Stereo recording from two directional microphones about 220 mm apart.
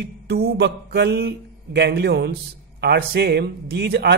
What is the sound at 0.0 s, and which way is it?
A man's voice, 50° right (ahead or behind).